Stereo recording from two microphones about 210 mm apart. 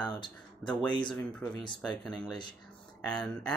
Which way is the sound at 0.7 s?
5° left (ahead or behind).